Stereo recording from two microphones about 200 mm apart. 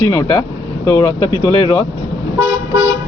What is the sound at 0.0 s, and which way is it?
Speech, 15° left (ahead or behind).